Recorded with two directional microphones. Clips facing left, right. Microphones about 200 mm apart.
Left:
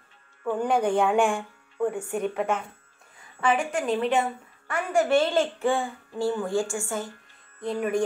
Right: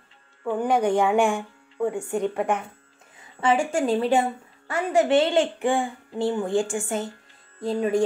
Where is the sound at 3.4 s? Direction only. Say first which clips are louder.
Right 3 dB; 25° right (ahead or behind).